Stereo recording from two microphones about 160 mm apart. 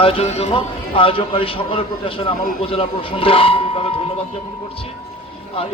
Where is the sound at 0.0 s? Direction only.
35° left (ahead or behind).